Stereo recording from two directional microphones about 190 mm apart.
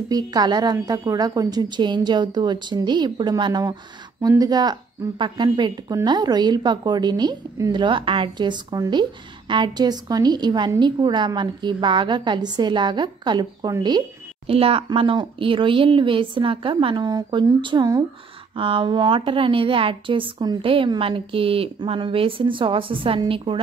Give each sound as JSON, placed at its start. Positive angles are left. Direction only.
{"t": 0.1, "sound": "speech", "side_deg": -20}